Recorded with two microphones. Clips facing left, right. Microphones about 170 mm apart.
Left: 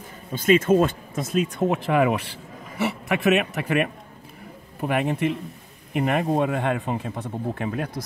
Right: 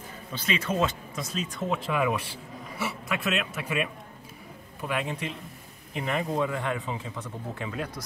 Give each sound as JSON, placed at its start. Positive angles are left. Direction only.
{"t": 0.3, "sound": "a man's voice", "side_deg": 45}